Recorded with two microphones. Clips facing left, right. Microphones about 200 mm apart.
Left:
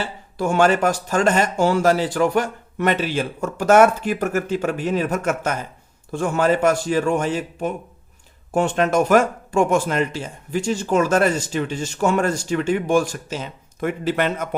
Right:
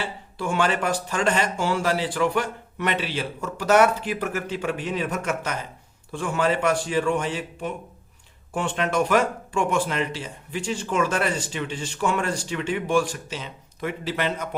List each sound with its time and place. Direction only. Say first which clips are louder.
0.3 s speech: left 7 dB; 45° left (ahead or behind)